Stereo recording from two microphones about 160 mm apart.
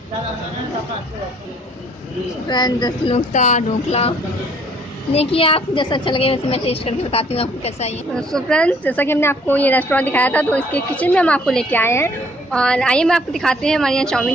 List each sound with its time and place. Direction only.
2.4 s a woman's voice: 25° left (ahead or behind)
3.3 s speech: 50° left (ahead or behind)
5.1 s a woman's voice: 35° left (ahead or behind)
8.3 s a woman's voice: 5° left (ahead or behind)